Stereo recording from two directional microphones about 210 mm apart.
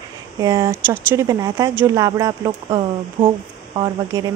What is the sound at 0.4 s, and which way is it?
Speech, 15° right (ahead or behind).